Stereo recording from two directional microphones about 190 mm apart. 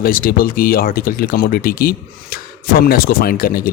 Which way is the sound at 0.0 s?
50° left (ahead or behind).